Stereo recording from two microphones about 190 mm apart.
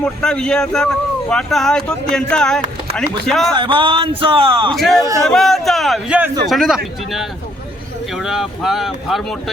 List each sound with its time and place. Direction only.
0.0 s speech: 5° left (ahead or behind)
3.5 s speech: 25° right (ahead or behind)
4.7 s speech: centre (ahead or behind)